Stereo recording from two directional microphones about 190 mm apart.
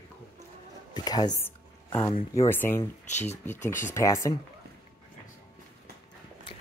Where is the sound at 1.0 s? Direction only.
20° left (ahead or behind).